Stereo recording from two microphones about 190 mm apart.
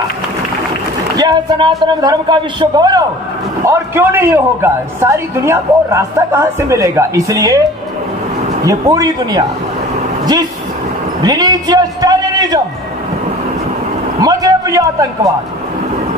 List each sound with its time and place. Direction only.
1.1 s a man's voice: 20° right (ahead or behind)
8.6 s a man's voice: 20° right (ahead or behind)
11.2 s a man's voice: 20° right (ahead or behind)
14.2 s a man's voice: 15° right (ahead or behind)